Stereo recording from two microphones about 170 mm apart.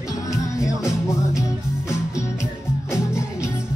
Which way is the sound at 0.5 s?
5° right (ahead or behind).